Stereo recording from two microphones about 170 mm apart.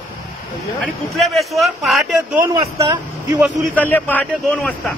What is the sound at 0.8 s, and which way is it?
A man's voice, centre (ahead or behind).